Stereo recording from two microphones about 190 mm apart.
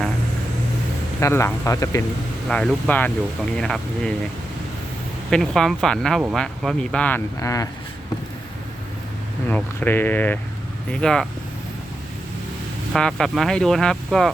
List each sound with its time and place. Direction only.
1.2 s speech: 15° left (ahead or behind)
2.5 s speech: 5° left (ahead or behind)
5.3 s speech: 5° left (ahead or behind)
9.5 s speech: 10° left (ahead or behind)
12.9 s speech: 5° left (ahead or behind)